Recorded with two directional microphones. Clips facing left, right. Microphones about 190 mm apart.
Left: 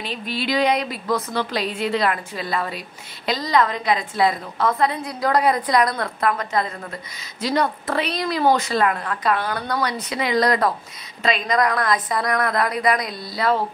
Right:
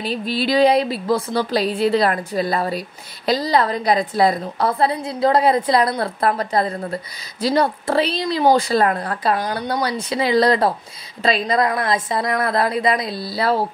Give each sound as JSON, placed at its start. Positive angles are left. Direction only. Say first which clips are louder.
{"t": 0.0, "sound": "a woman's voice", "louder": "right 5 dB", "side_deg": -35}